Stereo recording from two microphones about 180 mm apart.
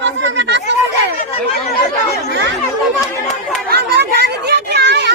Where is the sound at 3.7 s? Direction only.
65° right (ahead or behind).